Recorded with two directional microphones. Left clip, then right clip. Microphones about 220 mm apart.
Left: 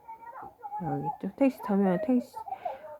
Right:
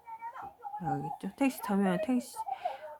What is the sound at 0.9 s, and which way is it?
A child's voice, 15° right (ahead or behind).